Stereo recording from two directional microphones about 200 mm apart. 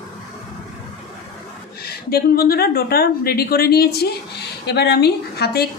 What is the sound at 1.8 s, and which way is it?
A woman's voice, 50° left (ahead or behind).